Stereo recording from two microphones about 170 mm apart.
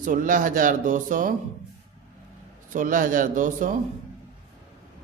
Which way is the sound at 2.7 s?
55° right (ahead or behind).